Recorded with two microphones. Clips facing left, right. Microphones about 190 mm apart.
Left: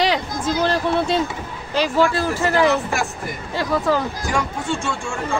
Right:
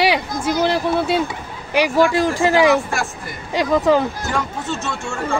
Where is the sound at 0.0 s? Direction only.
10° right (ahead or behind).